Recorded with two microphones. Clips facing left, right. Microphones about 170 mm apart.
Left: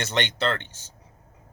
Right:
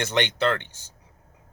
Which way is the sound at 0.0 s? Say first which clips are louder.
Right 2 dB; 15° right (ahead or behind).